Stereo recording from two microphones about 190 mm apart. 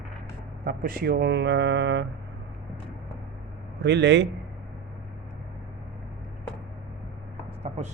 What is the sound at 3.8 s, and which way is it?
Speech, 65° right (ahead or behind).